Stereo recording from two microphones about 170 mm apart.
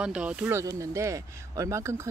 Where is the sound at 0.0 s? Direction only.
5° right (ahead or behind).